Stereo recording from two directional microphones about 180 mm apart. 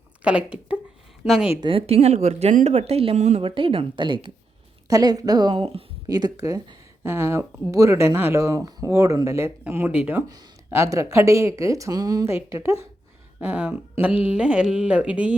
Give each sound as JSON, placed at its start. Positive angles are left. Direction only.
{"t": 0.2, "sound": "speech", "side_deg": -5}
{"t": 1.6, "sound": "speech", "side_deg": -30}